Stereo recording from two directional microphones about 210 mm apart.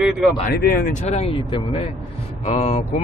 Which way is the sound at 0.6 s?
45° left (ahead or behind).